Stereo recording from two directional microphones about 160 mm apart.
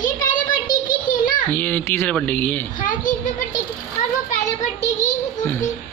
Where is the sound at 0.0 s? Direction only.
55° left (ahead or behind).